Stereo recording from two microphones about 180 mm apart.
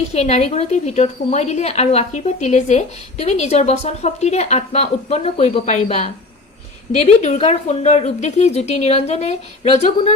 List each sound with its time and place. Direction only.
0.1 s a woman's voice: 35° left (ahead or behind)